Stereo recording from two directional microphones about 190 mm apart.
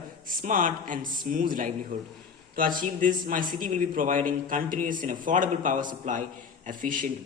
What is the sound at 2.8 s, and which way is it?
A man's voice, 45° right (ahead or behind).